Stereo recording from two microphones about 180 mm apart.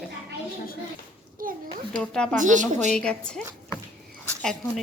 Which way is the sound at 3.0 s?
5° left (ahead or behind).